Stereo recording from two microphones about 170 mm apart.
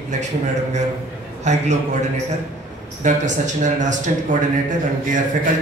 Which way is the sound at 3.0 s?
45° right (ahead or behind).